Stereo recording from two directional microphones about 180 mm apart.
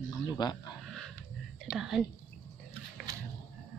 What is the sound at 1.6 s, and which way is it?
Speech, centre (ahead or behind).